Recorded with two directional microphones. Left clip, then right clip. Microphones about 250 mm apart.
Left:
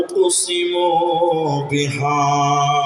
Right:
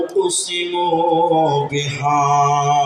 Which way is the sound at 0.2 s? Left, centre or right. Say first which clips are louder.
Left 3 dB; left.